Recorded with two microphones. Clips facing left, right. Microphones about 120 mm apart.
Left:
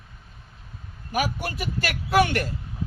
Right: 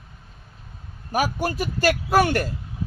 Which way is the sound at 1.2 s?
35° right (ahead or behind).